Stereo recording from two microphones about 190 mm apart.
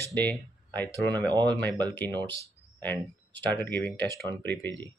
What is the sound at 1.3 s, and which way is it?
Speech, 20° right (ahead or behind).